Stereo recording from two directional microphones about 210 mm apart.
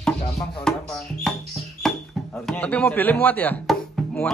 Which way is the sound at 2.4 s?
5° left (ahead or behind).